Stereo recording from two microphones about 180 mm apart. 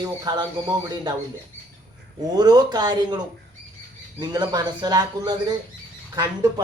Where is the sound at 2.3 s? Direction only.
20° right (ahead or behind).